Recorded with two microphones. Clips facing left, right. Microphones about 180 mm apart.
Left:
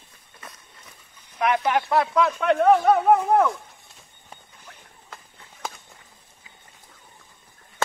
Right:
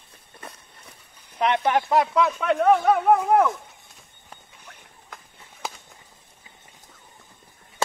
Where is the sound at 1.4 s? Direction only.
25° right (ahead or behind).